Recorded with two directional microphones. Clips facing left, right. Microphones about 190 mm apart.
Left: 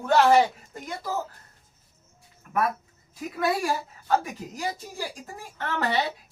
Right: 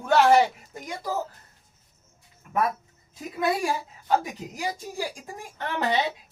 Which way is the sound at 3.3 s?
20° right (ahead or behind).